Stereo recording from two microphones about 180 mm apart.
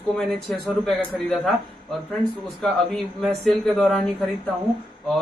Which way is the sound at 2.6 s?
Centre (ahead or behind).